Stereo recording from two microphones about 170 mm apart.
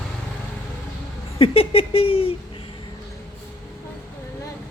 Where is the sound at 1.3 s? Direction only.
35° left (ahead or behind).